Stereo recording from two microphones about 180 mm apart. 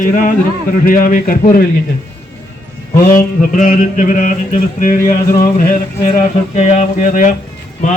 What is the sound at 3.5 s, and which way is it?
Mantra, 45° left (ahead or behind).